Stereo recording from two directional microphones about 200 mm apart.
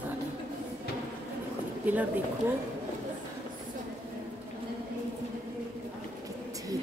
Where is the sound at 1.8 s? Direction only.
10° right (ahead or behind).